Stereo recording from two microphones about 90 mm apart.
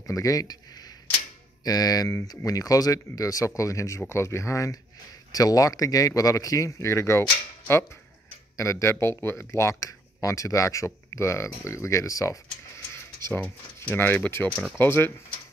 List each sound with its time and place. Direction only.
0.0 s speech: 40° left (ahead or behind)
1.6 s speech: 45° left (ahead or behind)
12.9 s a sound: 30° left (ahead or behind)
13.8 s speech: 25° left (ahead or behind)